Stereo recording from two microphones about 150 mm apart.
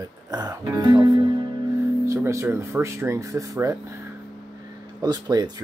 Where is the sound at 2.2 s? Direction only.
20° right (ahead or behind).